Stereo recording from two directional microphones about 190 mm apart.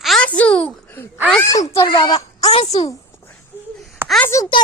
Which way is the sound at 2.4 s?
35° left (ahead or behind).